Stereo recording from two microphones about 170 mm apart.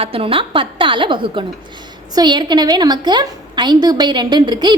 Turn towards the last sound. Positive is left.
turn(degrees=-25)  # may be behind; listen again after turning